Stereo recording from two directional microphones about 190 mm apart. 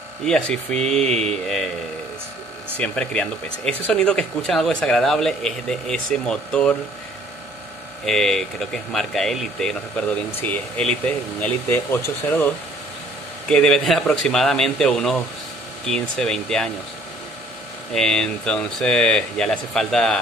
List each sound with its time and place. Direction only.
0.2 s speech: 5° left (ahead or behind)
1.0 s speech: 35° right (ahead or behind)
2.8 s speech: 5° left (ahead or behind)
8.0 s speech: centre (ahead or behind)
13.5 s speech: centre (ahead or behind)
17.9 s speech: 5° left (ahead or behind)